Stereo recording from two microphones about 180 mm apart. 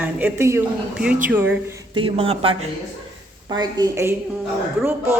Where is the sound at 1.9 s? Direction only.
30° right (ahead or behind); by 4.1 s 15° right (ahead or behind).